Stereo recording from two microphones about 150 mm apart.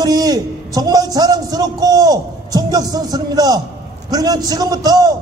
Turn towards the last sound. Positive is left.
turn(degrees=-25)  # may be behind; listen again after turning